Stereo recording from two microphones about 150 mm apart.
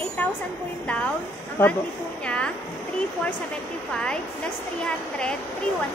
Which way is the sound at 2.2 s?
5° left (ahead or behind).